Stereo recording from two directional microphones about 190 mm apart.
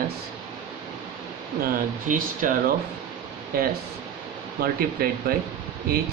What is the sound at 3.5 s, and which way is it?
Speech, 50° right (ahead or behind).